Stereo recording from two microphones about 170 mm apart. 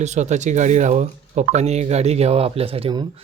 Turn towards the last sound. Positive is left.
turn(degrees=-30)  # may be behind; listen again after turning